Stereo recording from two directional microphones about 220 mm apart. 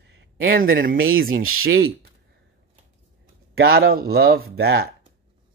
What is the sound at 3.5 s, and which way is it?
A man's voice, 45° right (ahead or behind).